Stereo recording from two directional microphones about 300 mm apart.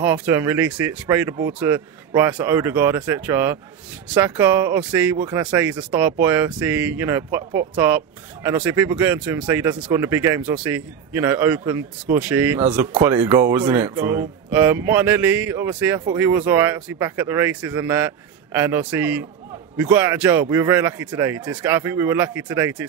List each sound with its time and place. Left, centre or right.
0.0 s speech: centre